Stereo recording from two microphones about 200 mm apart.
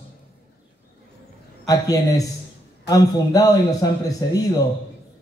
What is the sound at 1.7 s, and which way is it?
A man's voice, 15° left (ahead or behind).